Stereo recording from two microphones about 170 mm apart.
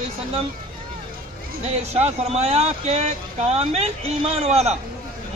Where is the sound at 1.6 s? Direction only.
40° right (ahead or behind).